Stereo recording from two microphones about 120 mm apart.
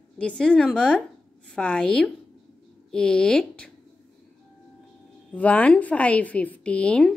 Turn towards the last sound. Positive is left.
turn(degrees=5)  # may be behind; listen again after turning